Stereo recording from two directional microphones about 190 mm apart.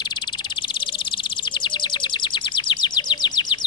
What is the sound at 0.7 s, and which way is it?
Bird, 25° left (ahead or behind).